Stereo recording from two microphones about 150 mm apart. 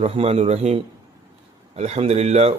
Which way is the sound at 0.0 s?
40° right (ahead or behind).